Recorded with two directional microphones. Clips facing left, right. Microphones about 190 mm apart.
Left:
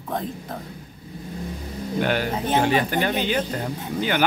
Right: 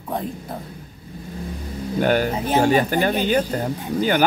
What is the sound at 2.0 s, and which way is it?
Speech, 45° right (ahead or behind).